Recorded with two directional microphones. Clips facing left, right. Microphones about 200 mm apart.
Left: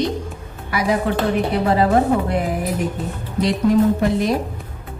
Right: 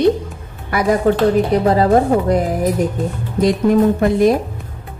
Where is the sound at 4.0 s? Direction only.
50° right (ahead or behind).